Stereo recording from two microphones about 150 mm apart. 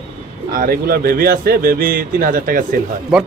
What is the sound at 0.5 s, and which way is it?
Speech, 80° right.